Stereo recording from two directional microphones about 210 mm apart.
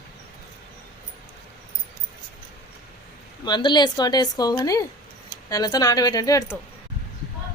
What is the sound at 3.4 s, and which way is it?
Speech, 20° left (ahead or behind).